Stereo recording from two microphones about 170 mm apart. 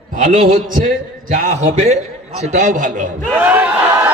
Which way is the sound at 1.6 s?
40° right (ahead or behind).